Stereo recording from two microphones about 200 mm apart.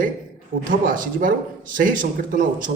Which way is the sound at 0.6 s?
45° right (ahead or behind).